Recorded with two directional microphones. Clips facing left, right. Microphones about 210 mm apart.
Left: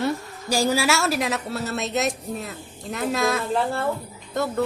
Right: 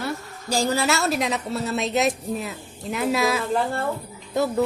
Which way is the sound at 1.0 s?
5° left (ahead or behind).